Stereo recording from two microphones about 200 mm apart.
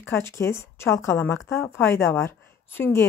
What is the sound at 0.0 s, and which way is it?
A woman's voice, 15° left (ahead or behind).